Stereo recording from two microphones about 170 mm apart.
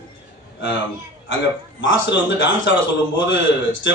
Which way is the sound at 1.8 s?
90° left.